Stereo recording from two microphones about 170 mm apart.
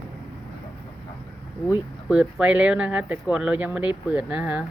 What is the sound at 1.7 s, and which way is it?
Speech, 5° right (ahead or behind).